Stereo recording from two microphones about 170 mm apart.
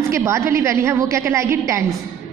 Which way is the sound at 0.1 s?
15° right (ahead or behind).